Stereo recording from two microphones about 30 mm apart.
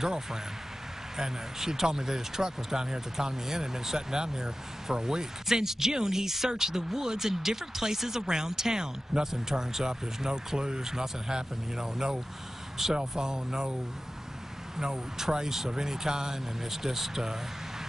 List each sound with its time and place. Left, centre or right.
0.0 s speech: centre
13.2 s speech: right
14.8 s speech: centre